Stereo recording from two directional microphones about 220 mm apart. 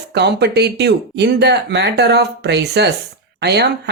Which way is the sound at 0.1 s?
50° right (ahead or behind).